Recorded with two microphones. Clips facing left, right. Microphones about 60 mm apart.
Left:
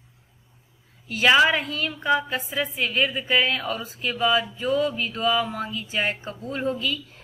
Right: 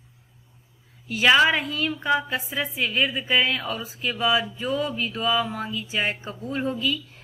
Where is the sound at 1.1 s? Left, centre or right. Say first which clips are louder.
Even; centre.